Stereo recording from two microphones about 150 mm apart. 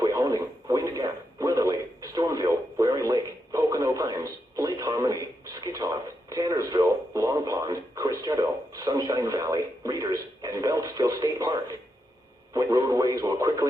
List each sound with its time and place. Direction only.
0.0 s radio: 25° right (ahead or behind)